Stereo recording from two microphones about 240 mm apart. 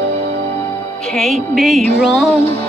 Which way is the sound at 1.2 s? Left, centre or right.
Centre.